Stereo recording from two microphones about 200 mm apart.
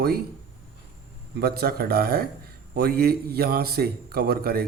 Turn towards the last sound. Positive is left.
turn(degrees=-50)  # may be behind; listen again after turning